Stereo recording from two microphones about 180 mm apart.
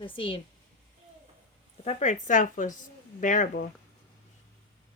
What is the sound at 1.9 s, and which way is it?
Speech, 40° left (ahead or behind).